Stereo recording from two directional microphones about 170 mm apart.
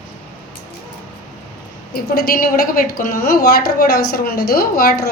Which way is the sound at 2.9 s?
55° left (ahead or behind).